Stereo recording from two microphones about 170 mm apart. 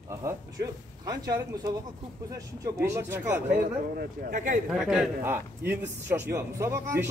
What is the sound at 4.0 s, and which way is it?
Speech, 55° right (ahead or behind).